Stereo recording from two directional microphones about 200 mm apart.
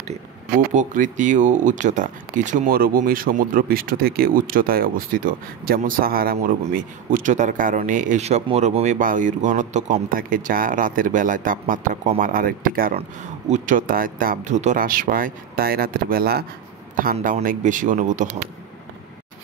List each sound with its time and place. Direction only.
0.7 s speech: 40° right (ahead or behind)